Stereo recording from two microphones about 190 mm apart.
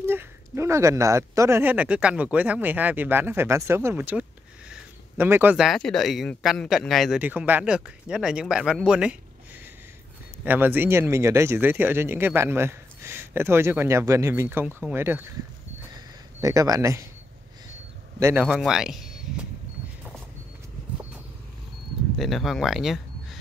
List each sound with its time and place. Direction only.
0.0 s speech: 10° right (ahead or behind)
10.4 s speech: 10° right (ahead or behind)
16.3 s speech: 20° right (ahead or behind)
18.2 s speech: 5° right (ahead or behind)
22.1 s speech: centre (ahead or behind)